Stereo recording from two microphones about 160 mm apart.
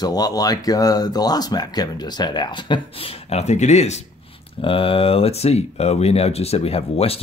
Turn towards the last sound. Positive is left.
turn(degrees=40)  # may be behind; listen again after turning